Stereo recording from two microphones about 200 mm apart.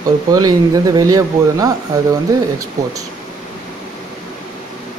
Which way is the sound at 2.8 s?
20° right (ahead or behind).